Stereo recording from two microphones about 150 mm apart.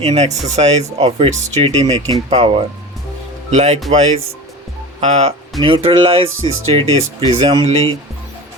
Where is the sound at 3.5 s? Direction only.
50° right (ahead or behind).